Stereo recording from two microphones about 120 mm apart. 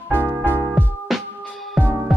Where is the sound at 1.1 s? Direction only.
Centre (ahead or behind).